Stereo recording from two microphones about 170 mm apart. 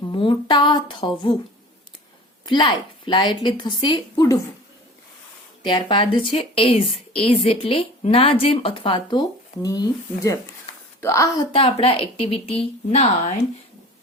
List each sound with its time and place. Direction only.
0.1 s a woman's voice: 30° left (ahead or behind)
2.5 s a woman's voice: 25° left (ahead or behind)
5.6 s a woman's voice: 30° left (ahead or behind)
11.5 s a woman's voice: 30° left (ahead or behind)